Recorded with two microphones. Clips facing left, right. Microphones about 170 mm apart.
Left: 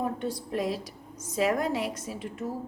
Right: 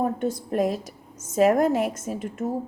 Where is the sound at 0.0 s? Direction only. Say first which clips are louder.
Right 6 dB; 45° right (ahead or behind).